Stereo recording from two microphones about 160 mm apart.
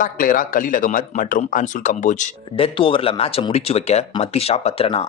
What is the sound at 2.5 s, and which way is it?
Speech, 35° left (ahead or behind).